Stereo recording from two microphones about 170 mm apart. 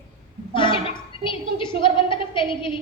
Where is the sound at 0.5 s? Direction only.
30° left (ahead or behind).